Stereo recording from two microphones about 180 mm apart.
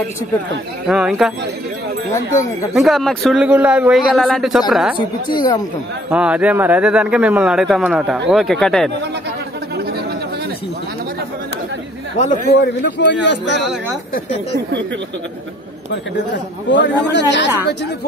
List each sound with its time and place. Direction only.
0.8 s speech: centre (ahead or behind)
2.7 s speech: centre (ahead or behind)
4.9 s a woman's voice: 25° left (ahead or behind)
6.0 s a man's voice: 5° right (ahead or behind)
12.5 s speech: 80° left
16.3 s speech: 80° left